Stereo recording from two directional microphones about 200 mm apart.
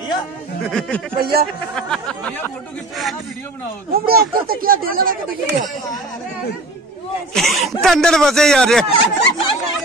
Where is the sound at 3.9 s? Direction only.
50° right (ahead or behind).